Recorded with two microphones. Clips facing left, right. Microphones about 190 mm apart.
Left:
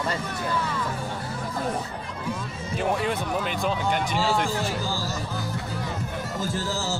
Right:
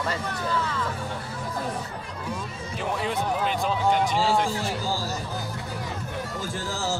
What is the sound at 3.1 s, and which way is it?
Music, 55° left (ahead or behind).